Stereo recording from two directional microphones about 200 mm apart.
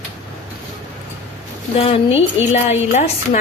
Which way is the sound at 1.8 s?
30° left (ahead or behind).